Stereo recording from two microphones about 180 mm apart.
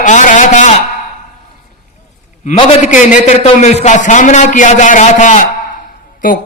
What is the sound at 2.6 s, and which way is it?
A man's voice, 40° left (ahead or behind).